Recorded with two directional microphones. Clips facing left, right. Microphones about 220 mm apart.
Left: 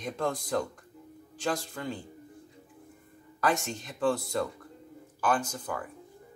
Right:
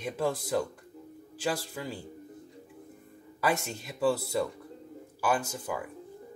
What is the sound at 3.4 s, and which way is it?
Speech, 10° right (ahead or behind).